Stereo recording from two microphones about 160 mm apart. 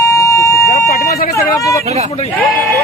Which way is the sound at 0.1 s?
20° left (ahead or behind).